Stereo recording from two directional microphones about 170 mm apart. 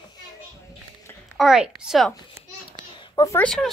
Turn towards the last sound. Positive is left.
turn(degrees=5)  # may be behind; listen again after turning